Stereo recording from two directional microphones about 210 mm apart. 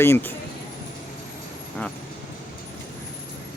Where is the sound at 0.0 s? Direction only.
10° left (ahead or behind).